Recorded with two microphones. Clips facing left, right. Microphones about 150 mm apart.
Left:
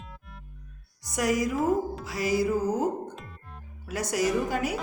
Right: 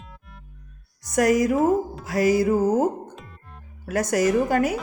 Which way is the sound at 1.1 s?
50° right (ahead or behind).